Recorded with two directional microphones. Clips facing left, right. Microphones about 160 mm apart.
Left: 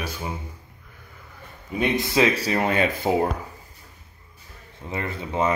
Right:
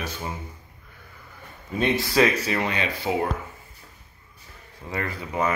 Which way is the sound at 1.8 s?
20° left (ahead or behind).